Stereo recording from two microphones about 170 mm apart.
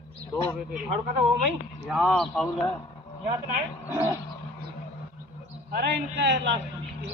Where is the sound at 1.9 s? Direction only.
Centre (ahead or behind).